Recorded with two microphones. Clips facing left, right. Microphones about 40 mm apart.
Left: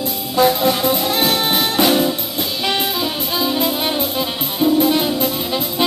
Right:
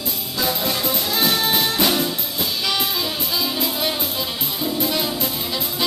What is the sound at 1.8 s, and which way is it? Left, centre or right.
Music, centre.